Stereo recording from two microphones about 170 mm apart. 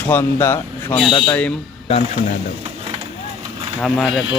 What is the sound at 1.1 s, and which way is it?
Speech, 25° left (ahead or behind).